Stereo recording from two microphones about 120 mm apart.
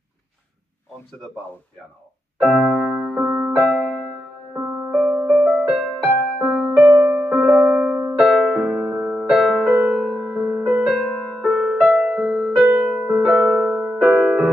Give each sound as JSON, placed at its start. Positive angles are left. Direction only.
{"t": 2.5, "sound": "music", "side_deg": 0}